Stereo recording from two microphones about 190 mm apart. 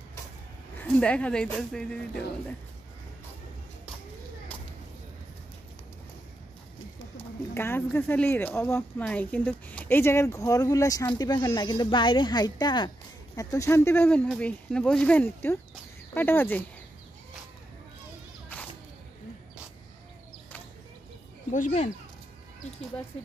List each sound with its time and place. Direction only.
0.7 s speech: 5° left (ahead or behind)
7.5 s speech: 10° left (ahead or behind)
21.5 s speech: 40° left (ahead or behind)